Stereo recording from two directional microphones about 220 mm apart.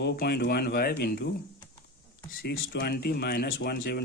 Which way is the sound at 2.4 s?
45° left (ahead or behind).